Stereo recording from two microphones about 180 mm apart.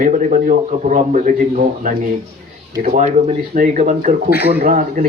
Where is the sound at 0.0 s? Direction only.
45° right (ahead or behind).